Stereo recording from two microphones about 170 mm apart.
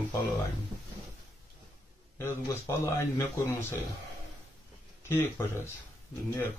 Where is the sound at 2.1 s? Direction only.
15° left (ahead or behind).